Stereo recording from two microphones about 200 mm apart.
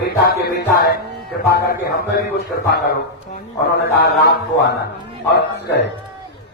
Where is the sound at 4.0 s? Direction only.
55° left (ahead or behind).